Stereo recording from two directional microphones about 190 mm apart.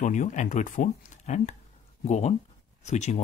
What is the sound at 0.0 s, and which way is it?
Speech, 40° left (ahead or behind).